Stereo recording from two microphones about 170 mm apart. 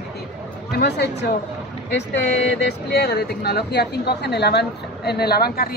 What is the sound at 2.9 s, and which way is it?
Speech, 75° left (ahead or behind).